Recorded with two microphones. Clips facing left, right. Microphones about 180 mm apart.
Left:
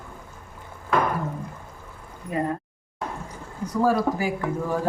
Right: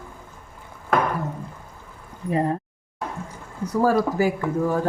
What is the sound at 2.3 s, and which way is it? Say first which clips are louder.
Speech: right 3 dB; 30° right (ahead or behind).